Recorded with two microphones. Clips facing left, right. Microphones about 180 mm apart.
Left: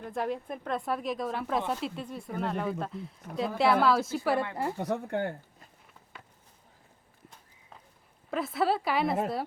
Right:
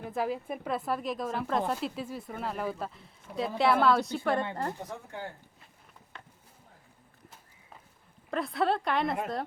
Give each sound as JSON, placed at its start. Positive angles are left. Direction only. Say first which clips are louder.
{"t": 0.0, "sound": "speech", "louder": "even", "side_deg": 0}
{"t": 4.8, "sound": "speech", "louder": "left 9 dB", "side_deg": 65}
{"t": 8.3, "sound": "speech", "louder": "left 1 dB", "side_deg": 0}